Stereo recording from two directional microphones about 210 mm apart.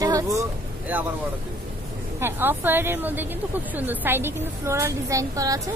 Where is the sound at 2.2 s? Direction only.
10° right (ahead or behind).